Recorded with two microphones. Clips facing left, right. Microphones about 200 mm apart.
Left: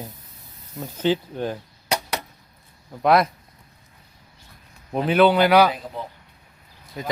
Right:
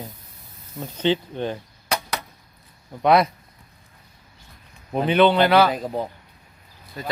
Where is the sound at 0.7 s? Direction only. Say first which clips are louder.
Even; centre (ahead or behind).